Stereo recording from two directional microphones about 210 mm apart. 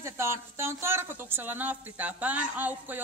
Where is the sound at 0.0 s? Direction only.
10° right (ahead or behind).